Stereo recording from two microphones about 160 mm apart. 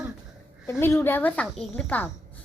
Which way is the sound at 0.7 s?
15° left (ahead or behind).